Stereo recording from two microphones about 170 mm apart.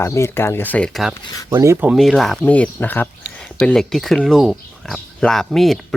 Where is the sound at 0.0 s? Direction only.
15° left (ahead or behind).